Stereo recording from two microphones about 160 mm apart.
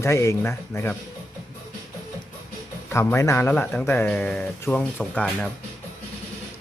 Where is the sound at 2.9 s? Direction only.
15° left (ahead or behind).